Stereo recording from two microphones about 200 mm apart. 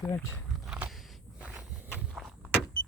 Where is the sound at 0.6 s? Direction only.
5° right (ahead or behind).